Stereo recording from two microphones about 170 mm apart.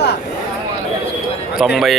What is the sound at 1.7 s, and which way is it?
Speech, centre (ahead or behind).